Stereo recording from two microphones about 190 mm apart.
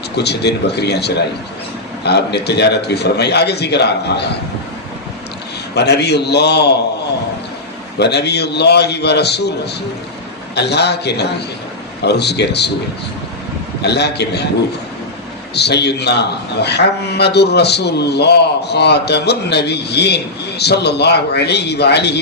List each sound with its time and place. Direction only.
0.2 s a man's voice: 60° left (ahead or behind)
5.7 s a man's voice: 60° left (ahead or behind)
7.9 s a man's voice: 60° left (ahead or behind)
13.8 s a man's voice: 60° left (ahead or behind)
15.5 s a man's voice: 60° left (ahead or behind)